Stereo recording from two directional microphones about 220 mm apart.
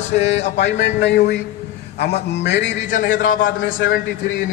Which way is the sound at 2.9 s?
35° left (ahead or behind).